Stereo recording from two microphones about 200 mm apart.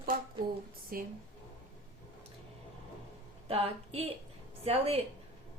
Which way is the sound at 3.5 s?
30° right (ahead or behind).